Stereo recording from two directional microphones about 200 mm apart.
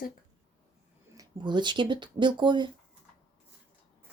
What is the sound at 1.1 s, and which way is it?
Speech, 20° right (ahead or behind).